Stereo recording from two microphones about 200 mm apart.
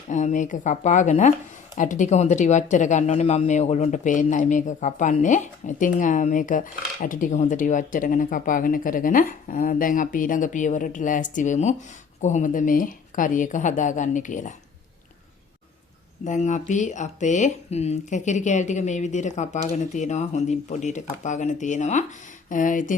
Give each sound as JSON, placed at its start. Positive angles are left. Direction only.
{"t": 0.1, "sound": "speech", "side_deg": 40}
{"t": 16.2, "sound": "speech", "side_deg": 40}